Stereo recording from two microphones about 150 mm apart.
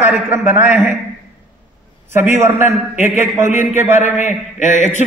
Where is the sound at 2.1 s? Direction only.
15° right (ahead or behind).